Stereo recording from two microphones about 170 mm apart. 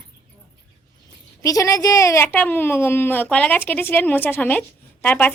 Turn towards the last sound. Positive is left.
turn(degrees=10)  # may be behind; listen again after turning